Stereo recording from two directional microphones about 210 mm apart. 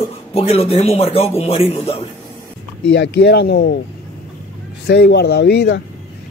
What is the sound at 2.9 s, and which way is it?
Speech, 55° left (ahead or behind).